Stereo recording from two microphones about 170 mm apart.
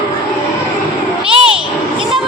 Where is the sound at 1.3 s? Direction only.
30° right (ahead or behind).